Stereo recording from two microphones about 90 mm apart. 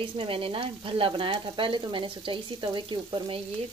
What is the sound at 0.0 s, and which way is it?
Frying, 75° right (ahead or behind).